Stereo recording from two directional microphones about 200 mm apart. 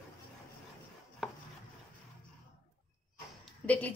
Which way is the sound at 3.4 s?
5° left (ahead or behind).